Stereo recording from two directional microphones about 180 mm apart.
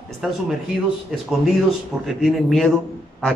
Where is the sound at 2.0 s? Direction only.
Centre (ahead or behind).